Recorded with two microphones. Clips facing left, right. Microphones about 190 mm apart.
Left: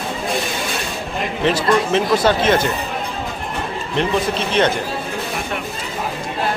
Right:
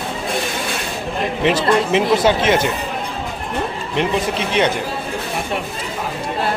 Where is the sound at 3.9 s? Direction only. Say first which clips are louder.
Left 1 dB; 15° right (ahead or behind).